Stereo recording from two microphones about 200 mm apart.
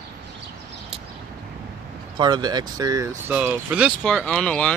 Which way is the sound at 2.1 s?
20° right (ahead or behind).